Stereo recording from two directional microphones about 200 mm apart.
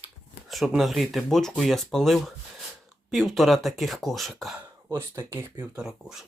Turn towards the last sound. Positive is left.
turn(degrees=0)  # may be behind; listen again after turning